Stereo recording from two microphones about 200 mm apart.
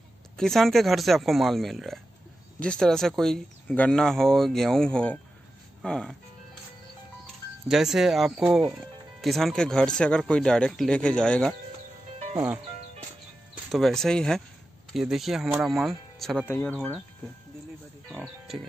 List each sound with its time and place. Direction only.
0.4 s speech: centre (ahead or behind)
7.6 s speech: centre (ahead or behind)
13.7 s speech: centre (ahead or behind)
18.1 s speech: centre (ahead or behind)